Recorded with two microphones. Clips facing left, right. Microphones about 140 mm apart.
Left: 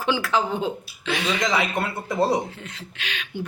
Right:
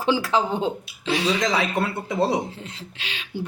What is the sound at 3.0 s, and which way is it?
Speech, 30° right (ahead or behind).